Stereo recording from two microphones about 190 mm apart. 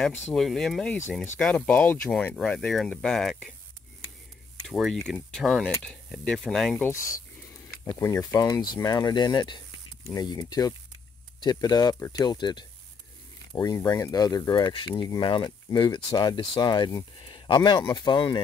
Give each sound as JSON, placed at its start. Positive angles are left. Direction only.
{"t": 0.3, "sound": "speech", "side_deg": 0}
{"t": 4.6, "sound": "speech", "side_deg": 0}